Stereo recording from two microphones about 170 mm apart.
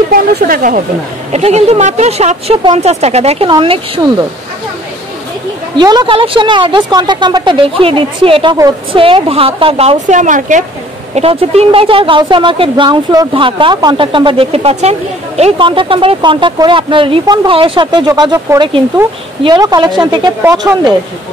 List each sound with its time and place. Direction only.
0.1 s speech: 55° right (ahead or behind)
1.3 s speech: 40° right (ahead or behind)
5.8 s a woman's voice: 25° right (ahead or behind); by 10.6 s 45° right (ahead or behind)
11.1 s a woman's voice: 35° right (ahead or behind)
20.4 s speech: 15° right (ahead or behind)